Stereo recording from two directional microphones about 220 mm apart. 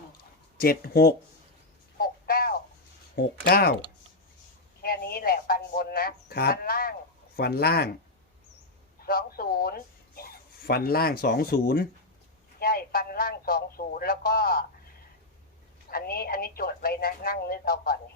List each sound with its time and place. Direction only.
0.6 s a woman's voice: 45° left (ahead or behind)
2.0 s a sound: 40° left (ahead or behind)
3.2 s a woman's voice: 45° left (ahead or behind)
4.8 s a woman's voice: 45° left (ahead or behind)
9.0 s speech: 45° left (ahead or behind)
15.9 s a woman's voice: 45° left (ahead or behind)